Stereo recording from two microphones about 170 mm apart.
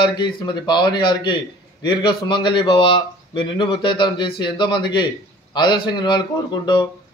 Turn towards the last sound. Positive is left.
turn(degrees=25)  # may be behind; listen again after turning